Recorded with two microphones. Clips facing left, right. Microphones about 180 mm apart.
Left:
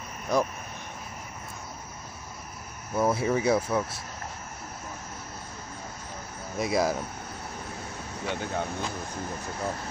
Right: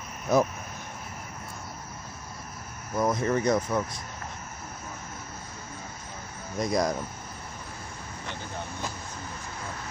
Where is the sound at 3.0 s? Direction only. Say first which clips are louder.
Left 1 dB; 5° left (ahead or behind).